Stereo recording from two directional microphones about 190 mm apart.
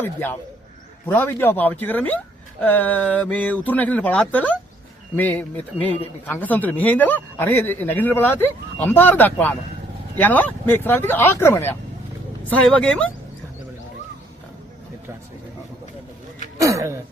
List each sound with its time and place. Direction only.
0.0 s speech: 10° left (ahead or behind)
16.6 s speech: 15° right (ahead or behind)